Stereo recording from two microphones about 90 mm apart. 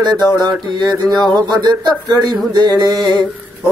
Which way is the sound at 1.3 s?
55° right (ahead or behind).